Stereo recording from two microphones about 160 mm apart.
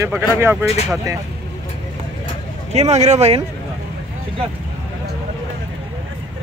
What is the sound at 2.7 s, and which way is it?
Speech, 40° right (ahead or behind).